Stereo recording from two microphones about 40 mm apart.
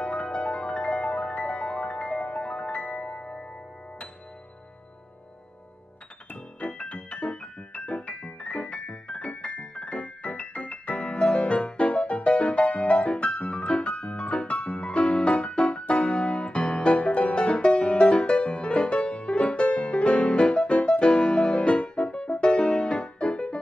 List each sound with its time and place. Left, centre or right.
0.0 s music: left
6.3 s music: left